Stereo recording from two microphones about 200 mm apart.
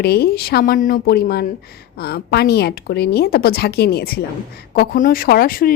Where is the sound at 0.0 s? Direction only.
50° left (ahead or behind).